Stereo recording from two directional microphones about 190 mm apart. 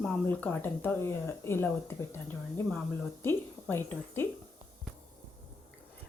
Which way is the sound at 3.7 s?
10° left (ahead or behind).